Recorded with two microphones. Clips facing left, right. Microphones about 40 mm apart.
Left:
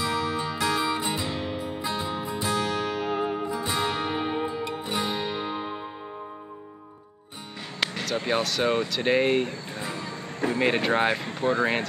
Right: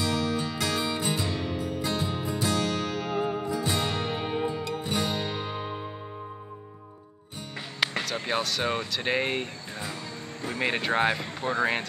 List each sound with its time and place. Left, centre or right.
0.0 s music: centre
8.0 s speech: centre